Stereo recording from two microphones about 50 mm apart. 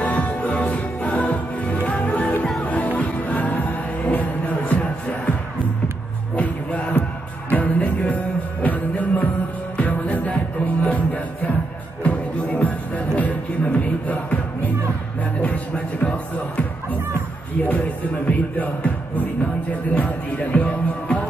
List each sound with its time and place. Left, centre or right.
0.0 s music: left
6.3 s music: left
12.0 s music: left
18.3 s music: left